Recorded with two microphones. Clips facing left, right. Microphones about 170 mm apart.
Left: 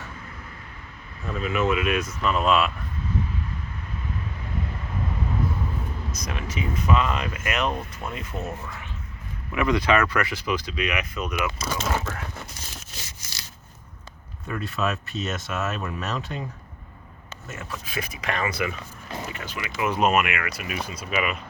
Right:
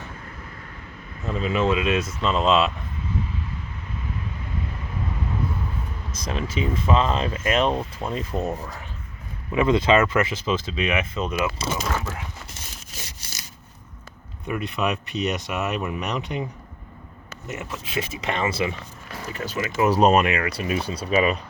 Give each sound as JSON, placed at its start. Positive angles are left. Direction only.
{"t": 1.3, "sound": "speech", "side_deg": -30}
{"t": 6.1, "sound": "speech", "side_deg": -25}
{"t": 9.5, "sound": "speech", "side_deg": -25}
{"t": 13.2, "sound": "rub", "side_deg": -30}
{"t": 14.4, "sound": "speech", "side_deg": -15}
{"t": 17.5, "sound": "speech", "side_deg": -20}
{"t": 19.3, "sound": "speech", "side_deg": -40}